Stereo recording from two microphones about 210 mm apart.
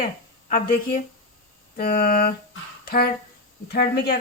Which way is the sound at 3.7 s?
50° left (ahead or behind).